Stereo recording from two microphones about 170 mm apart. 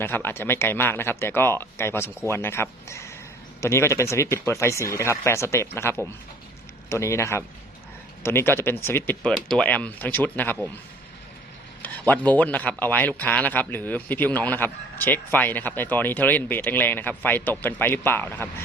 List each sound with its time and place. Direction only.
0.0 s a man's voice: 15° left (ahead or behind)
11.8 s a man's voice: 10° left (ahead or behind)